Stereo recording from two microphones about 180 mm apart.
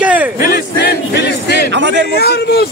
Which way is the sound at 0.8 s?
70° left (ahead or behind).